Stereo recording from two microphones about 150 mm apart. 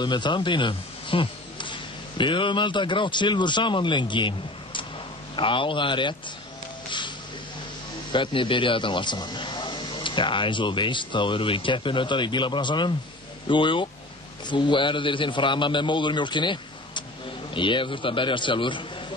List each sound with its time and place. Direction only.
0.0 s speech: 30° left (ahead or behind)
8.1 s speech: 35° left (ahead or behind)